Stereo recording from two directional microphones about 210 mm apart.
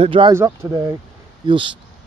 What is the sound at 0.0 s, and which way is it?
Speech, 25° right (ahead or behind).